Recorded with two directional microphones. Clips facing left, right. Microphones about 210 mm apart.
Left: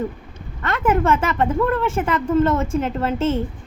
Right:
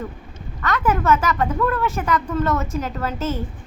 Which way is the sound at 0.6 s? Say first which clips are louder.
Left 2 dB; 25° left (ahead or behind).